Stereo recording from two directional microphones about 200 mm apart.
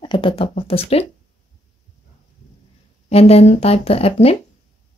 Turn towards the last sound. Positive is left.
turn(degrees=30)  # may be behind; listen again after turning